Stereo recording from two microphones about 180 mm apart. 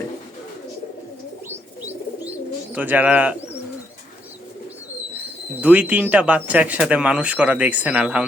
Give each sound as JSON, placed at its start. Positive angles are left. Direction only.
{"t": 2.7, "sound": "speech", "side_deg": -10}
{"t": 5.1, "sound": "speech", "side_deg": -10}